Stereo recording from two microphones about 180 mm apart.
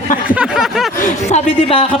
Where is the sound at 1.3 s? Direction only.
30° left (ahead or behind).